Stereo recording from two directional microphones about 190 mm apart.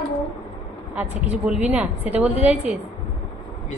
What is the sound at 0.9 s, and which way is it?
A woman's voice, 5° right (ahead or behind).